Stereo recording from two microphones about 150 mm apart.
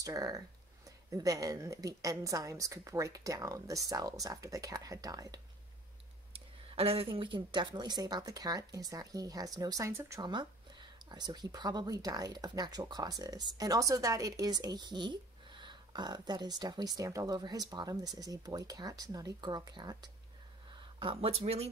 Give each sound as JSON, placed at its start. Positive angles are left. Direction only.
{"t": 0.0, "sound": "speech", "side_deg": -20}
{"t": 6.3, "sound": "speech", "side_deg": -35}